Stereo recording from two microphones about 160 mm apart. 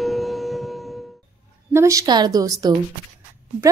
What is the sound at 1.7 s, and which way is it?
A woman's voice, 20° right (ahead or behind).